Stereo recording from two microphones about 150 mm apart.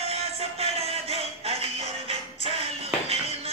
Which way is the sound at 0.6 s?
40° right (ahead or behind).